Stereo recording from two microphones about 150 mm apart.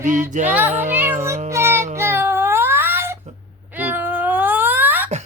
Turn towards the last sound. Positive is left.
turn(degrees=-10)  # may be behind; listen again after turning